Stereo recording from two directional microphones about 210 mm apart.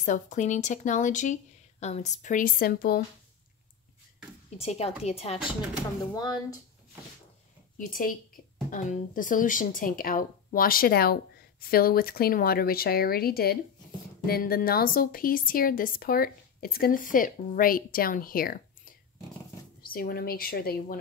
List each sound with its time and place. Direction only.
0.0 s speech: 35° left (ahead or behind)
4.6 s a woman's voice: 30° left (ahead or behind)
7.7 s a woman's voice: 40° left (ahead or behind)